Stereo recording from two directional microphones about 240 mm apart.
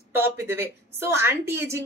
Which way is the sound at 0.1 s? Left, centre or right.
Centre.